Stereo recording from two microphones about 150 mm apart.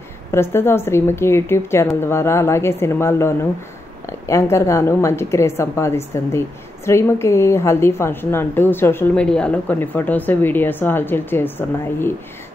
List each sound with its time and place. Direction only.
0.3 s a woman's voice: 15° left (ahead or behind)